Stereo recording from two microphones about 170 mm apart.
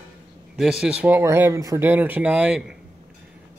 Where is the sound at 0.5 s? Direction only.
5° right (ahead or behind).